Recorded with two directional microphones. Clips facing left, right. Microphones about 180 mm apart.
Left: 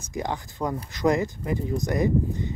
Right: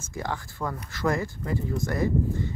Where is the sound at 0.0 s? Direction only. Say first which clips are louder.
Left 3 dB; 20° left (ahead or behind).